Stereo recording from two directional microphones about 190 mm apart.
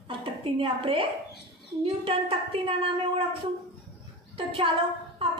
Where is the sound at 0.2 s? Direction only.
25° right (ahead or behind).